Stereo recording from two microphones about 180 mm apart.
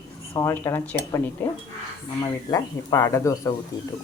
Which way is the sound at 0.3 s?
15° left (ahead or behind).